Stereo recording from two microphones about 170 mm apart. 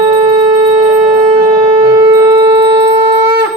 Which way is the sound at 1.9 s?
15° right (ahead or behind).